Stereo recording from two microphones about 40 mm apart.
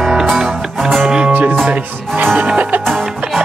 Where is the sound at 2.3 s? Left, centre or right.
Right.